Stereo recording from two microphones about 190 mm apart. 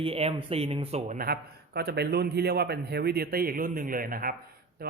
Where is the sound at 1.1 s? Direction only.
55° right (ahead or behind).